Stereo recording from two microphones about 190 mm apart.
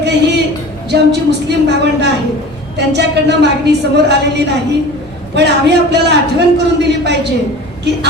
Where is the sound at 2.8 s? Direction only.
65° right (ahead or behind).